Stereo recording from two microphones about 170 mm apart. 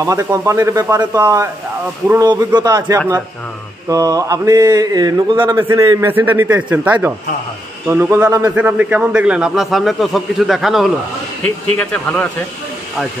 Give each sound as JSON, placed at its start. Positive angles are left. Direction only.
{"t": 0.0, "sound": "a man's voice", "side_deg": -15}